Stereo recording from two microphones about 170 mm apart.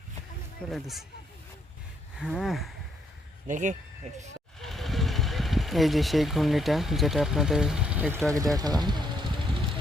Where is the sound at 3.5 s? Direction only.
45° right (ahead or behind).